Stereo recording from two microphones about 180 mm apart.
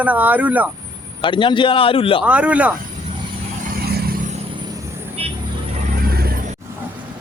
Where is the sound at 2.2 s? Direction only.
5° right (ahead or behind).